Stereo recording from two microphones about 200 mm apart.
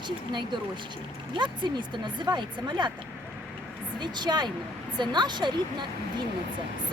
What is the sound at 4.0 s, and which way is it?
Speech, 20° right (ahead or behind).